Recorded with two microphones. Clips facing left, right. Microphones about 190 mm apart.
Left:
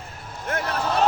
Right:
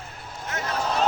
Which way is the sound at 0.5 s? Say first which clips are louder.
Left 4 dB; 55° left (ahead or behind).